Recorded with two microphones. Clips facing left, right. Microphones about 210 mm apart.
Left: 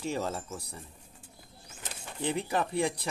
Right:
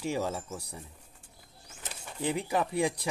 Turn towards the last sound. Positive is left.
turn(degrees=-10)  # may be behind; listen again after turning